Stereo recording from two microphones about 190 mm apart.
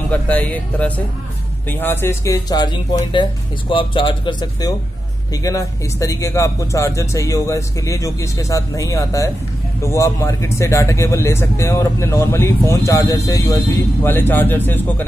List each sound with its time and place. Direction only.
0.1 s speech: 10° left (ahead or behind)